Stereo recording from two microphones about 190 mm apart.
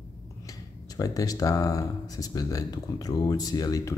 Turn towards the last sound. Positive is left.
turn(degrees=20)  # may be behind; listen again after turning